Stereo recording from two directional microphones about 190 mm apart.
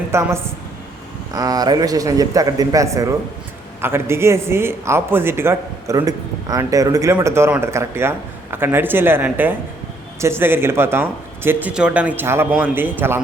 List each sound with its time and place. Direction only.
0.1 s a woman's voice: 15° right (ahead or behind)